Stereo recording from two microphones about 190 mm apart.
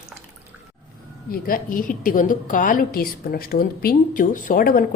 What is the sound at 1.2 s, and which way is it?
A woman's voice, 50° left (ahead or behind).